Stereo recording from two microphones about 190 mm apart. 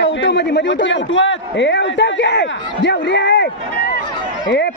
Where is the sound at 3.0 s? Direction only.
70° left (ahead or behind).